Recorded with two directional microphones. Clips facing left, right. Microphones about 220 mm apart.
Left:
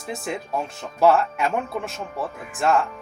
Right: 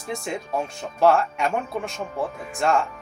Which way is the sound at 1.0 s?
5° left (ahead or behind).